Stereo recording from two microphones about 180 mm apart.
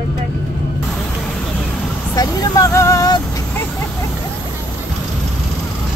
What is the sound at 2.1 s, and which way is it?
Speech, 20° left (ahead or behind).